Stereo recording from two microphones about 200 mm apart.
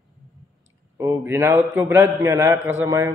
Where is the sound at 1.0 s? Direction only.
15° right (ahead or behind).